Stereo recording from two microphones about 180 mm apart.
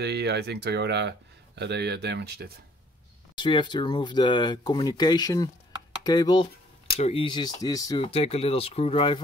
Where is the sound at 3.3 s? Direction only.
25° left (ahead or behind).